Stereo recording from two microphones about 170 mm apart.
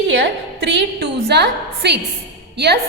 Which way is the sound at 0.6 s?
90° right.